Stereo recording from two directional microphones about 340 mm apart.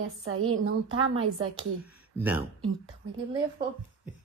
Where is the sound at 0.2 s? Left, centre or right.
Right.